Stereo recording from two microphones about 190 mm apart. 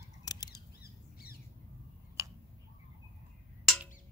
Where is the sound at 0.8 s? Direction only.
55° left (ahead or behind).